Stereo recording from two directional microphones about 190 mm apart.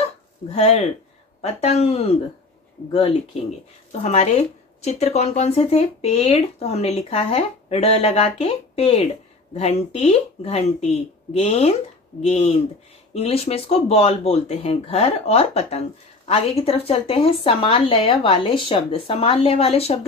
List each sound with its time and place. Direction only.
0.5 s speech: 35° left (ahead or behind)